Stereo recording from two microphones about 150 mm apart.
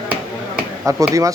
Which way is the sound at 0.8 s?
20° right (ahead or behind).